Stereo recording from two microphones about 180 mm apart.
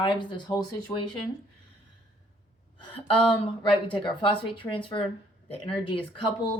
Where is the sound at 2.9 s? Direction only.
30° left (ahead or behind).